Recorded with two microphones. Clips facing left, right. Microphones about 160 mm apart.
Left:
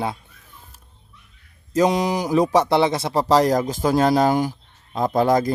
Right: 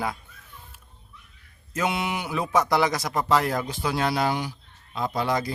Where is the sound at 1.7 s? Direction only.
35° left (ahead or behind).